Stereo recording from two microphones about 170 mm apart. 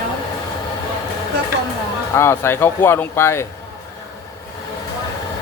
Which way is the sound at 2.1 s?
15° left (ahead or behind).